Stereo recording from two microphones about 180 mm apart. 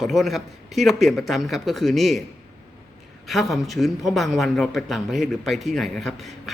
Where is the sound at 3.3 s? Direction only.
Centre (ahead or behind).